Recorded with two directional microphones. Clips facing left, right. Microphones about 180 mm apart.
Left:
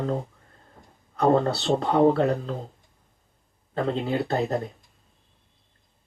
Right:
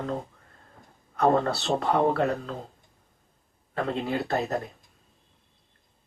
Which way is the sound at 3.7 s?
30° left (ahead or behind).